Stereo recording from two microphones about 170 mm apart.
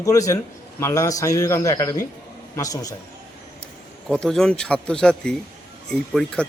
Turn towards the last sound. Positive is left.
turn(degrees=0)  # may be behind; listen again after turning